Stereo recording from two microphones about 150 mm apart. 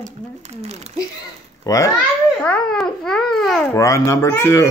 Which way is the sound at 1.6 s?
20° left (ahead or behind).